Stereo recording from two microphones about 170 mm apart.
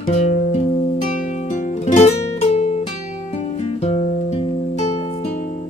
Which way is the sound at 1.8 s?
45° left (ahead or behind).